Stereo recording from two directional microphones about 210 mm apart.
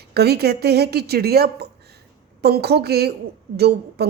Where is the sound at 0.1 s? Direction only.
50° right (ahead or behind).